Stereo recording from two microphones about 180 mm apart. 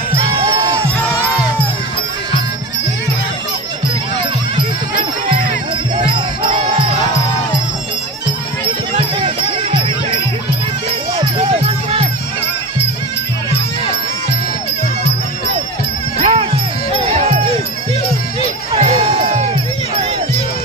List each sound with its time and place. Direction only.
5.9 s crowd: 30° right (ahead or behind)
8.9 s music: 30° right (ahead or behind)
11.1 s music: 30° right (ahead or behind)
16.2 s music: 35° right (ahead or behind)
18.7 s crowd: 35° right (ahead or behind)